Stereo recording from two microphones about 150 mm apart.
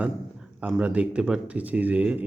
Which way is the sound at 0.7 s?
5° right (ahead or behind).